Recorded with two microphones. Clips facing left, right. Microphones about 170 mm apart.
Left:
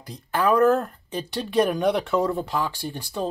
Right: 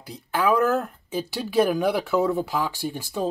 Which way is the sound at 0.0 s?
10° right (ahead or behind).